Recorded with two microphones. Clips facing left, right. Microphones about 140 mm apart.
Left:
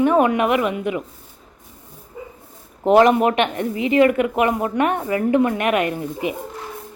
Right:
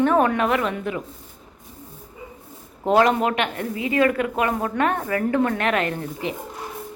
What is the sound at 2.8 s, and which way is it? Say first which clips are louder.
A woman's voice: left 4 dB; 20° left (ahead or behind).